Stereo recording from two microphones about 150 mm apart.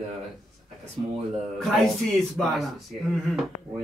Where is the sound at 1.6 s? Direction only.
Centre (ahead or behind).